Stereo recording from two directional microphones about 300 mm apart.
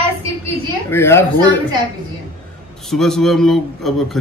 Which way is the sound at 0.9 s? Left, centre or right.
Centre.